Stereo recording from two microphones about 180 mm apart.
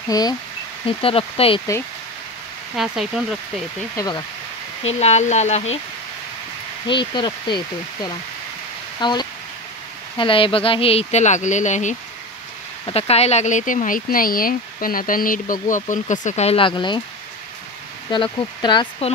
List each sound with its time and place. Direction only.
0.1 s speech: 20° left (ahead or behind)
2.7 s speech: centre (ahead or behind)
3.9 s speech: 20° left (ahead or behind)
4.8 s speech: 35° left (ahead or behind)
6.9 s speech: 25° left (ahead or behind)
18.1 s speech: 25° left (ahead or behind)